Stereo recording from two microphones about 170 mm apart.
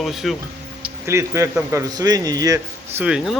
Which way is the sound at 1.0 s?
15° right (ahead or behind).